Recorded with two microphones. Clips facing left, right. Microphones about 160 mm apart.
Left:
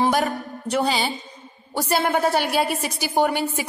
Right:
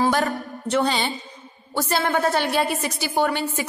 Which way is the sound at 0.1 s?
10° left (ahead or behind).